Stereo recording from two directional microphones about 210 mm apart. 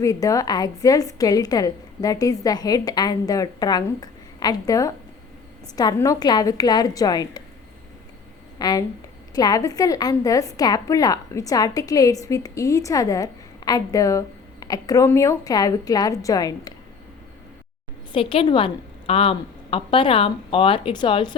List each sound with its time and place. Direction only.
0.0 s a woman's voice: 15° left (ahead or behind)
8.5 s a woman's voice: 20° left (ahead or behind)
18.1 s a woman's voice: 25° left (ahead or behind)